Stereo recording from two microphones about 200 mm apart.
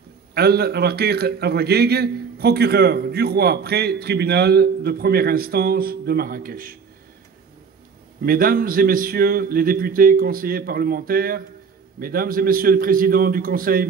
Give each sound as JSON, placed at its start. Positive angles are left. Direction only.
{"t": 0.3, "sound": "a man's voice", "side_deg": -50}
{"t": 8.2, "sound": "a man's voice", "side_deg": -45}